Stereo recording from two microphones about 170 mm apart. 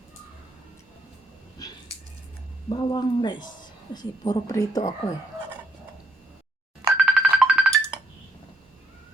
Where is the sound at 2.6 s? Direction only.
25° left (ahead or behind).